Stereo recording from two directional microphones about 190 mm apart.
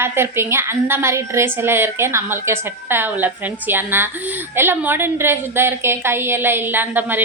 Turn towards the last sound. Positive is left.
turn(degrees=-10)  # may be behind; listen again after turning